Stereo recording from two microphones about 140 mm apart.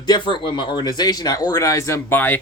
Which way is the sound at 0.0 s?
35° left (ahead or behind).